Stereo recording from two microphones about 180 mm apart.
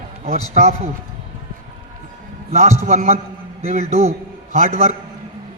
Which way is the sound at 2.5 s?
45° right (ahead or behind).